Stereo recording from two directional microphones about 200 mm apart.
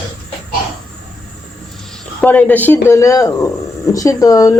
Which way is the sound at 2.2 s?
10° left (ahead or behind).